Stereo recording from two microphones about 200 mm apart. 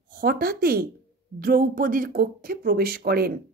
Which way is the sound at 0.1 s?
45° right (ahead or behind).